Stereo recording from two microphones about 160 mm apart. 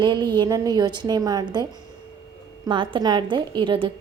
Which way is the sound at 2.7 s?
30° right (ahead or behind).